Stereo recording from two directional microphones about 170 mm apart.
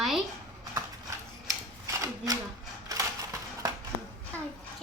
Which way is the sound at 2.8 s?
20° right (ahead or behind).